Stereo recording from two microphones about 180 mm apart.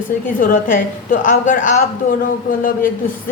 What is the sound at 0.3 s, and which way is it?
Speech, 45° left (ahead or behind).